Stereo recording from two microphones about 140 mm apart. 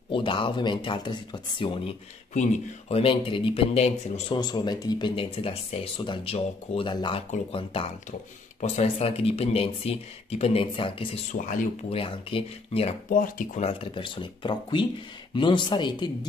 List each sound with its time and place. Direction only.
0.1 s speech: 35° left (ahead or behind)
2.3 s speech: 55° left (ahead or behind)
3.0 s speech: 40° left (ahead or behind)
4.4 s speech: 30° left (ahead or behind)
8.5 s speech: 50° left (ahead or behind)
11.3 s speech: 70° left (ahead or behind)
11.9 s speech: 40° left (ahead or behind)
13.1 s speech: 75° left (ahead or behind)
13.7 s speech: 40° left (ahead or behind)